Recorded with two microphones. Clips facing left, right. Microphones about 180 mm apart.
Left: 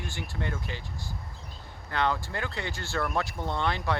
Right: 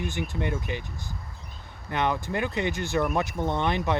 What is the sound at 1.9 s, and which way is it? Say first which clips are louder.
Speech: right 2 dB; 20° right (ahead or behind).